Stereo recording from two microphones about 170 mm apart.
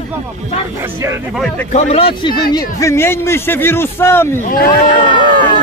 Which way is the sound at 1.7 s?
40° left (ahead or behind).